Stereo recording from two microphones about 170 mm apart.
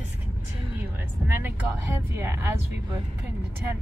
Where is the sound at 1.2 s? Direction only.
15° right (ahead or behind).